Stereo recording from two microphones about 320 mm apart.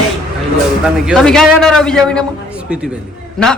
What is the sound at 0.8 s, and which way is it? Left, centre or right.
Speech, centre.